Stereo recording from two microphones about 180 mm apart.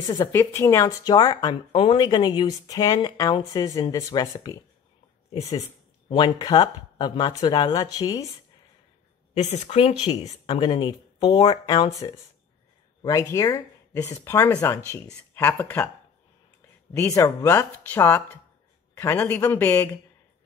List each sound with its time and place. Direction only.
0.0 s speech: 20° left (ahead or behind)
5.3 s speech: 35° left (ahead or behind)
6.0 s speech: 25° left (ahead or behind)
9.4 s speech: 35° left (ahead or behind); by 15.9 s 10° left (ahead or behind)
16.9 s speech: 15° left (ahead or behind)